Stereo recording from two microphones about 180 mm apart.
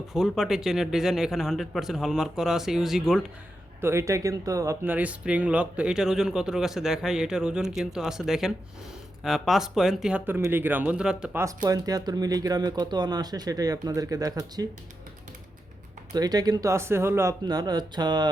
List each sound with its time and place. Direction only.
0.1 s speech: centre (ahead or behind)
3.8 s speech: 15° right (ahead or behind)
11.4 s speech: 20° right (ahead or behind)
16.1 s speech: 20° right (ahead or behind)